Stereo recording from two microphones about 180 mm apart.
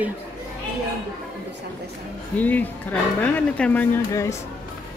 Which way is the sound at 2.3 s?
10° left (ahead or behind).